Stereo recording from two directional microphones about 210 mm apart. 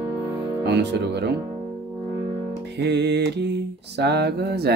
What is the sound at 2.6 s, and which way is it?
Speech, 55° right (ahead or behind).